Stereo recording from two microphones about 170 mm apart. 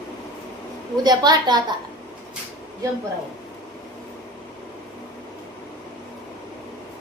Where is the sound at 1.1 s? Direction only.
25° right (ahead or behind).